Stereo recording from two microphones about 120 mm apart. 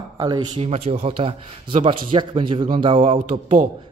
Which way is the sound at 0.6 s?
60° right (ahead or behind).